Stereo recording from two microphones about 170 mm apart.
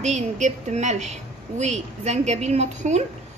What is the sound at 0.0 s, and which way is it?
A woman's voice, 45° right (ahead or behind).